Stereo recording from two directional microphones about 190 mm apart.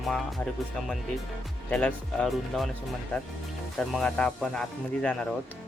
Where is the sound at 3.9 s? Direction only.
5° left (ahead or behind).